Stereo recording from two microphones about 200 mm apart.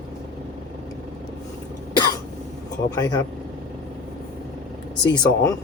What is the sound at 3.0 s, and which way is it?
Speech, 20° left (ahead or behind).